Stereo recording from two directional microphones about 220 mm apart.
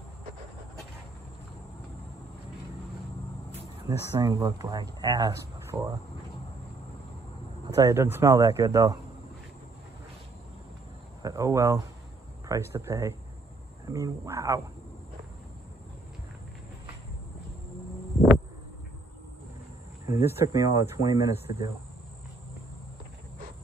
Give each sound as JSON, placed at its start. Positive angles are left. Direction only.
{"t": 3.8, "sound": "speech", "side_deg": -15}
{"t": 7.6, "sound": "speech", "side_deg": -15}
{"t": 11.2, "sound": "speech", "side_deg": -15}
{"t": 20.2, "sound": "speech", "side_deg": -10}